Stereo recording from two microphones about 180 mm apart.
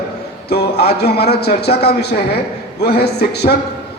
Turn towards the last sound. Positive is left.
turn(degrees=65)  # may be behind; listen again after turning